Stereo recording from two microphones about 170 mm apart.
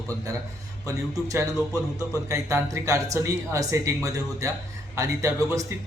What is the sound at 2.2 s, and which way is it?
A man's voice, 15° right (ahead or behind).